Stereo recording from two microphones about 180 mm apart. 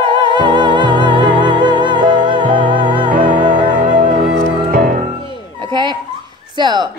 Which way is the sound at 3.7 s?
45° right (ahead or behind).